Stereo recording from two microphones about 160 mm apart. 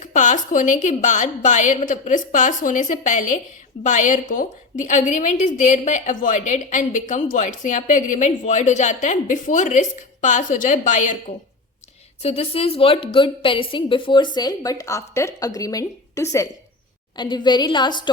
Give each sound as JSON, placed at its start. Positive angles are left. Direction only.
{"t": 0.0, "sound": "a woman's voice", "side_deg": 50}
{"t": 12.2, "sound": "a woman's voice", "side_deg": 40}